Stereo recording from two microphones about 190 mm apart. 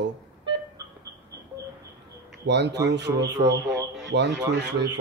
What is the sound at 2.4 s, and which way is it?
A man's voice, 65° right (ahead or behind).